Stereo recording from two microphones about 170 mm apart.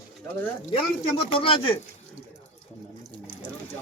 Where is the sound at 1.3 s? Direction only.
30° left (ahead or behind).